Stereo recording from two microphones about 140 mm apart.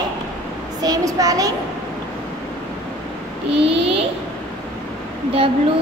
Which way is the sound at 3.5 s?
40° right (ahead or behind).